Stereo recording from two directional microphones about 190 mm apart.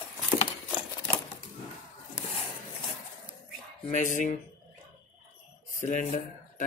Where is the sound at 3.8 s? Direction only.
40° left (ahead or behind).